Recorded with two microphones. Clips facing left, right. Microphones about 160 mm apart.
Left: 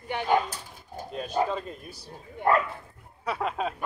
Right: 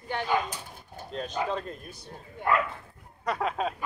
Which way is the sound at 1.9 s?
30° left (ahead or behind).